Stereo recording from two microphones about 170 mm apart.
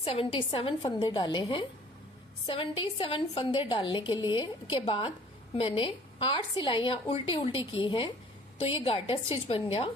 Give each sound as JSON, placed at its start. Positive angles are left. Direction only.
{"t": 0.0, "sound": "a woman's voice", "side_deg": 35}